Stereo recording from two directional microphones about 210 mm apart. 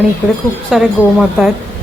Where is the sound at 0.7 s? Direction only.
Centre (ahead or behind).